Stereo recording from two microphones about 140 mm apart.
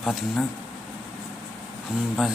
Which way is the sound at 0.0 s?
Centre (ahead or behind).